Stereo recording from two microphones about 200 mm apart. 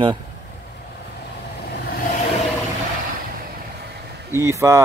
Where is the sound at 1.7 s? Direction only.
50° left (ahead or behind).